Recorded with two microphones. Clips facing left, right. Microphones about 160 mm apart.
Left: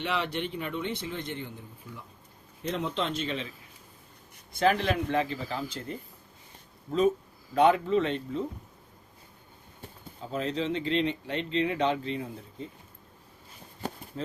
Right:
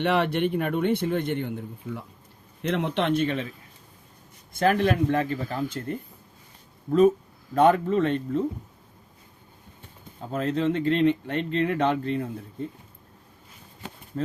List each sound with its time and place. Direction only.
0.0 s a man's voice: 60° right (ahead or behind)
2.6 s a man's voice: 80° right; by 3.4 s 60° right (ahead or behind)
4.5 s speech: 50° right (ahead or behind)
7.5 s speech: 50° right (ahead or behind)
10.3 s speech: 50° right (ahead or behind)
13.8 s a sound: 40° left (ahead or behind)